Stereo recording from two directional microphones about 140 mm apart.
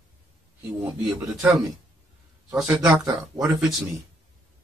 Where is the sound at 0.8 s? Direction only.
5° right (ahead or behind).